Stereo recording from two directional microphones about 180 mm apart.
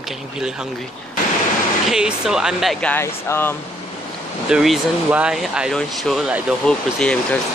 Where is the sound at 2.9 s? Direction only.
15° left (ahead or behind).